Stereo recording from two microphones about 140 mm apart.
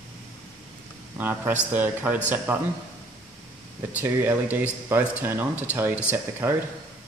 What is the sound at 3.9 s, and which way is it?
Speech, 10° right (ahead or behind).